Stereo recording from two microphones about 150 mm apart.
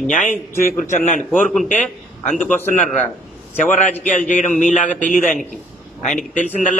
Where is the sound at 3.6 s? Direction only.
55° left (ahead or behind).